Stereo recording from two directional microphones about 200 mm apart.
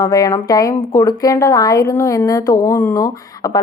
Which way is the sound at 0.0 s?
15° left (ahead or behind).